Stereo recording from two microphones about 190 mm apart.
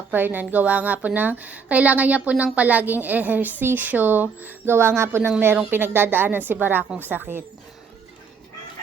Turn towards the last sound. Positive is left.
turn(degrees=-10)  # may be behind; listen again after turning